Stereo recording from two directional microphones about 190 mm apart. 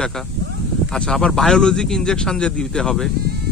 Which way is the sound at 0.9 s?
5° left (ahead or behind).